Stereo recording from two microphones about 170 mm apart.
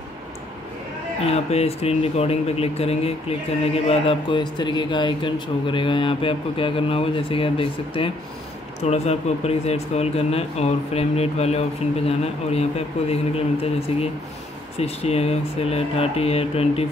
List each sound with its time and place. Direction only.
1.2 s speech: 35° left (ahead or behind)